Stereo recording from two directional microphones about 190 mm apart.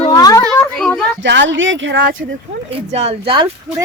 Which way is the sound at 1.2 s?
70° right (ahead or behind).